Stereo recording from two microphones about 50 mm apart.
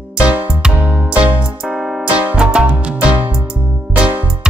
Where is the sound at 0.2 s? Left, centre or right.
Right.